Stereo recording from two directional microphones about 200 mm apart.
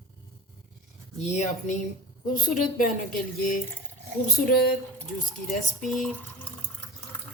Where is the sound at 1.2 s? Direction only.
35° left (ahead or behind).